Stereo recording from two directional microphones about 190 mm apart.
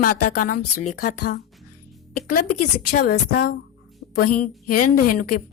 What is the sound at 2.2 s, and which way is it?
Speech, 45° left (ahead or behind).